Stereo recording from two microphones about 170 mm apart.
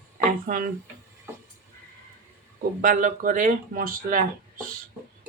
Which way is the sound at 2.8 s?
50° right (ahead or behind).